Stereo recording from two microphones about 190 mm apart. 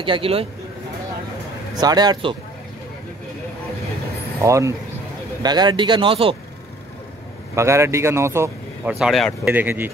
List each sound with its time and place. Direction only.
0.0 s speech: 30° right (ahead or behind)
1.8 s speech: 20° right (ahead or behind)
4.4 s speech: 15° right (ahead or behind)
7.5 s speech: 15° right (ahead or behind)
8.9 s speech: centre (ahead or behind)